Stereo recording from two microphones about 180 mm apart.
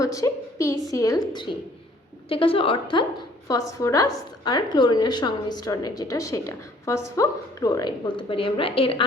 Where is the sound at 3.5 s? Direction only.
20° left (ahead or behind).